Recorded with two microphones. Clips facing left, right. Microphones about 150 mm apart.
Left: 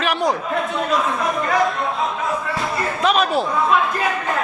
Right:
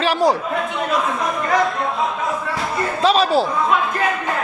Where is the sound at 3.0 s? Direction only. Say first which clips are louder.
Right 3 dB; 30° right (ahead or behind).